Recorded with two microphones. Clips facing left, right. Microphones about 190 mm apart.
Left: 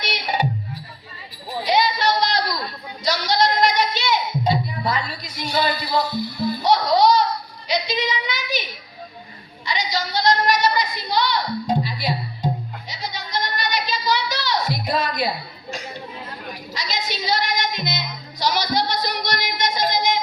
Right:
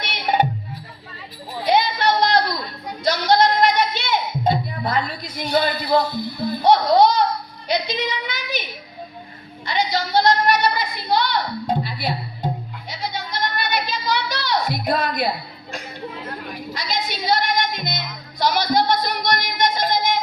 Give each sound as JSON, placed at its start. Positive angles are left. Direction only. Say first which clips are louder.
{"t": 0.1, "sound": "music", "louder": "right 5 dB", "side_deg": -55}
{"t": 1.6, "sound": "a sound", "louder": "right 2 dB", "side_deg": -55}
{"t": 2.8, "sound": "music", "louder": "right 5 dB", "side_deg": -55}
{"t": 7.7, "sound": "child singing", "louder": "even", "side_deg": -55}
{"t": 9.6, "sound": "a sound", "louder": "right 3 dB", "side_deg": -55}
{"t": 16.7, "sound": "music", "louder": "right 1 dB", "side_deg": -55}